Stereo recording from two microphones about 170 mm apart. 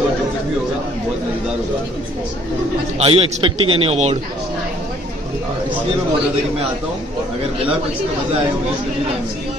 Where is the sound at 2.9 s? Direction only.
35° right (ahead or behind).